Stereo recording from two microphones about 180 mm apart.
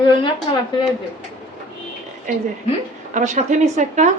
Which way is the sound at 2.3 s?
45° right (ahead or behind).